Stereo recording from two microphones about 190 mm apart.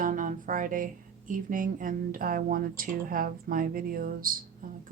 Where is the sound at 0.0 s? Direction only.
45° right (ahead or behind).